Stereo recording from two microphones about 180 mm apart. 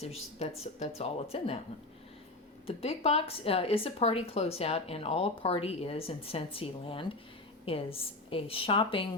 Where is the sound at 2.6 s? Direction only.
35° left (ahead or behind).